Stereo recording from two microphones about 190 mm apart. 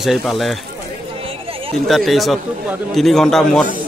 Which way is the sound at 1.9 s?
Centre (ahead or behind).